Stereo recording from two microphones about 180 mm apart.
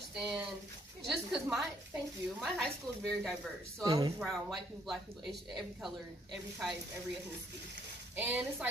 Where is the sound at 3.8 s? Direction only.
20° right (ahead or behind).